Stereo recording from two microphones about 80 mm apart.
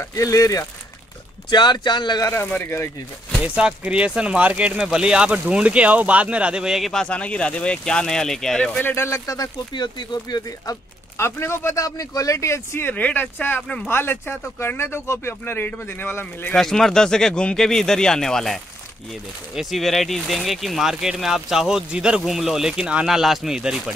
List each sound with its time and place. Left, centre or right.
0.1 s speech: left
1.5 s speech: left
2.3 s speech: left
3.4 s speech: centre
6.9 s speech: centre
8.8 s speech: left
9.8 s speech: left
11.1 s speech: left
12.8 s speech: left
16.5 s speech: centre